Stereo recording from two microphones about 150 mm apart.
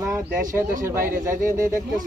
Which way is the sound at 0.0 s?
15° right (ahead or behind).